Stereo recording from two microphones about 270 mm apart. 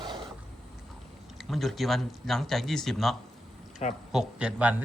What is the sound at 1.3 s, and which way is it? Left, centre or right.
Speech, centre.